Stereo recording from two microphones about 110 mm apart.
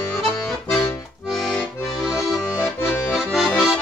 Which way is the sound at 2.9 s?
10° left (ahead or behind).